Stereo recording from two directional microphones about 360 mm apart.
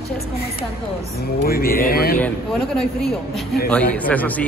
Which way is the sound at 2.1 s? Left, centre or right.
Centre.